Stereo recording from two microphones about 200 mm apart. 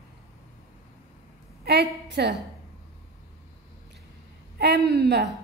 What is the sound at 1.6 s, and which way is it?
Speech, 55° right (ahead or behind).